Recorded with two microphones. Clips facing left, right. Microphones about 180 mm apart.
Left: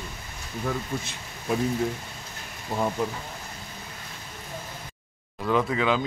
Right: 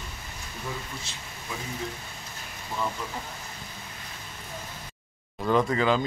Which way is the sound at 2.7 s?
40° left (ahead or behind).